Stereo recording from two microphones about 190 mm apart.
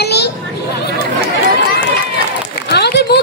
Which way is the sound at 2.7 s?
60° left (ahead or behind).